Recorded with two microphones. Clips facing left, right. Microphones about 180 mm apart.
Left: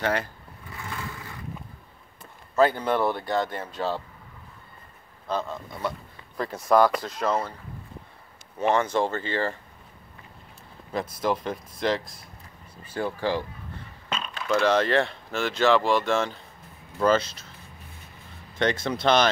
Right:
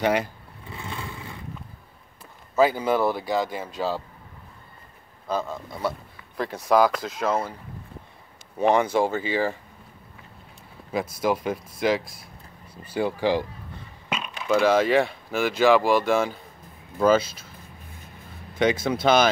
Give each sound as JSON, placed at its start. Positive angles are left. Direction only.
{"t": 0.0, "sound": "speech", "side_deg": -15}
{"t": 0.7, "sound": "vehicle", "side_deg": -25}
{"t": 2.5, "sound": "speech", "side_deg": -5}
{"t": 5.3, "sound": "speech", "side_deg": -5}
{"t": 8.5, "sound": "speech", "side_deg": -15}
{"t": 10.9, "sound": "speech", "side_deg": -10}
{"t": 18.6, "sound": "speech", "side_deg": -5}